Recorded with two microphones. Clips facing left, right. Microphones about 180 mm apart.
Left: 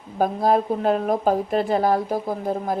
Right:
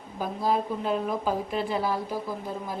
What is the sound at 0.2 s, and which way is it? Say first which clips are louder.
Speech: left 7 dB; 55° left (ahead or behind).